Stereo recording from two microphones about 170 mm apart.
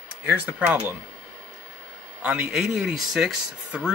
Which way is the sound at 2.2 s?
5° right (ahead or behind).